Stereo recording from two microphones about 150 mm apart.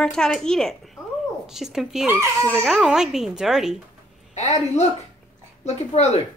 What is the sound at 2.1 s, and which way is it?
Speech, 20° right (ahead or behind).